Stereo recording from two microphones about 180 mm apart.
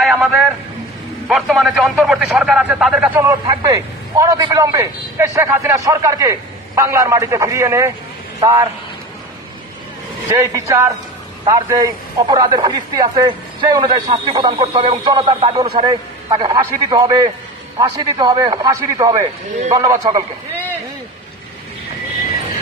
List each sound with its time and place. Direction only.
0.0 s a sound: centre (ahead or behind)
1.3 s a man's voice: centre (ahead or behind)
3.2 s a man's voice: 20° right (ahead or behind)
10.3 s a man's voice: 15° right (ahead or behind)